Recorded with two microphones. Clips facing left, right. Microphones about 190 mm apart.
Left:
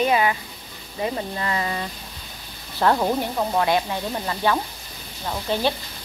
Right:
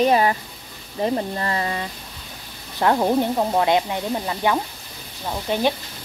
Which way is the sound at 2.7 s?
15° right (ahead or behind).